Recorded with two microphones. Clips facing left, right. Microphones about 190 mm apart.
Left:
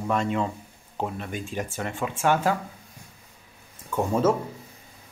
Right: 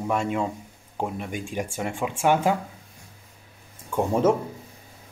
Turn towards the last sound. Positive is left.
turn(degrees=-15)  # may be behind; listen again after turning